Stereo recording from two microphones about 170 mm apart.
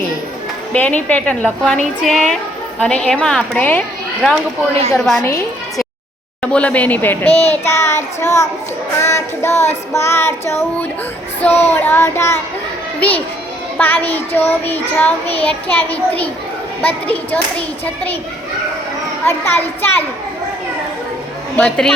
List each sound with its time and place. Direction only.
0.7 s a woman's voice: 10° left (ahead or behind)
6.4 s a woman's voice: 5° left (ahead or behind)
19.2 s a woman's voice: 10° left (ahead or behind)
21.5 s a woman's voice: 5° left (ahead or behind)